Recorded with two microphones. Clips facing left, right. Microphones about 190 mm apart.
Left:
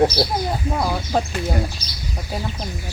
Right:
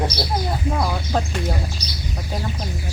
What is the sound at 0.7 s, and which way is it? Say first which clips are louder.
Speech: left 3 dB; 5° left (ahead or behind).